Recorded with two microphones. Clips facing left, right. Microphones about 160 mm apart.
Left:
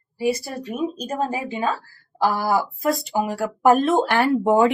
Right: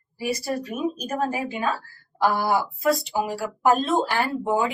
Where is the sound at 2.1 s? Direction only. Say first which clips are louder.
Left 1 dB; 35° left (ahead or behind).